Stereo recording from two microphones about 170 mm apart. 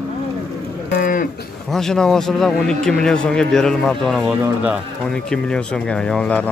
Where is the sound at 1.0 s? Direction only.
55° left (ahead or behind).